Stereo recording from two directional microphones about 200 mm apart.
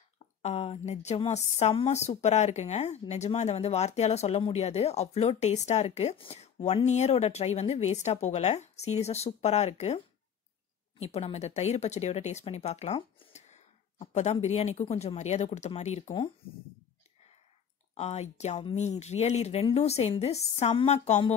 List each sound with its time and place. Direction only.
0.4 s a woman's voice: 30° left (ahead or behind)
17.9 s a woman's voice: 30° left (ahead or behind)